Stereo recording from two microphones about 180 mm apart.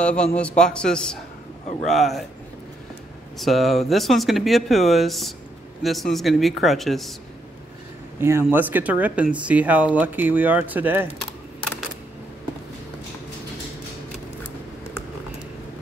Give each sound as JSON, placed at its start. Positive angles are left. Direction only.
{"t": 0.0, "sound": "speech", "side_deg": 5}
{"t": 3.3, "sound": "speech", "side_deg": 0}
{"t": 8.2, "sound": "speech", "side_deg": -15}